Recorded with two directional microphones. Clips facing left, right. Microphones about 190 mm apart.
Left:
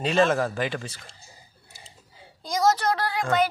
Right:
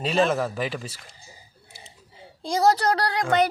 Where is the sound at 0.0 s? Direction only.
Centre (ahead or behind).